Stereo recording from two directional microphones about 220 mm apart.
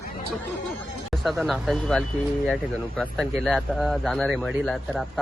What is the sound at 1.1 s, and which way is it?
Speech, centre (ahead or behind).